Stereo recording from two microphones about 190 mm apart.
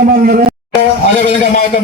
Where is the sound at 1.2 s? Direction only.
45° left (ahead or behind).